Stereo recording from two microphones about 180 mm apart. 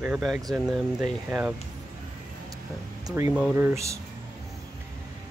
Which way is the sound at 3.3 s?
10° right (ahead or behind).